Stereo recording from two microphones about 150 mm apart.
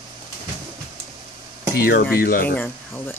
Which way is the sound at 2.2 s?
80° left.